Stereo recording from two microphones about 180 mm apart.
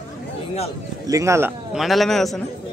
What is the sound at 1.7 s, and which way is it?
Speech, centre (ahead or behind).